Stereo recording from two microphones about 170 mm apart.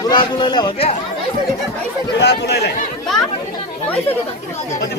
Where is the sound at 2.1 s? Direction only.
85° left.